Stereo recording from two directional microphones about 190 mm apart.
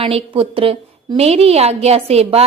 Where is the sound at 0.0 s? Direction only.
30° right (ahead or behind).